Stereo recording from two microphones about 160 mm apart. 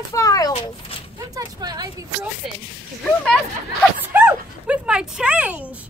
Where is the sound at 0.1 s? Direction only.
20° left (ahead or behind).